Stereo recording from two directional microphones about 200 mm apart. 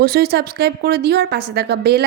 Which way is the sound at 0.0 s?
50° right (ahead or behind).